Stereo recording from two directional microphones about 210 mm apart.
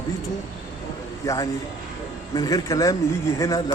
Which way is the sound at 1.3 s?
15° left (ahead or behind).